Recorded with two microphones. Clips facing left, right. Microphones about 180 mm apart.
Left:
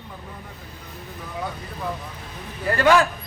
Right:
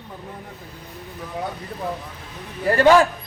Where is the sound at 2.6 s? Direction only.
30° right (ahead or behind).